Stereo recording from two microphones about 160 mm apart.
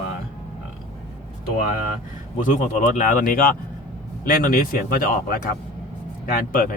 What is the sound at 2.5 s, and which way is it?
Speech, 55° left (ahead or behind).